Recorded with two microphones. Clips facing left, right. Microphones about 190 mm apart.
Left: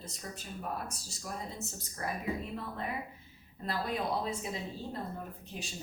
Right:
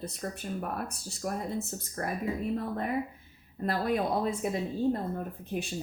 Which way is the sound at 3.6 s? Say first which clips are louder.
Right 6 dB; 55° right (ahead or behind).